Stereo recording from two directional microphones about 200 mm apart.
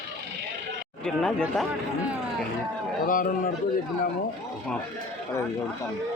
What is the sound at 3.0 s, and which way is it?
Speech, 45° left (ahead or behind).